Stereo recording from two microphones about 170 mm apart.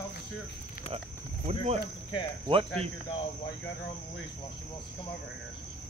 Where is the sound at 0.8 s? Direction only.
40° right (ahead or behind).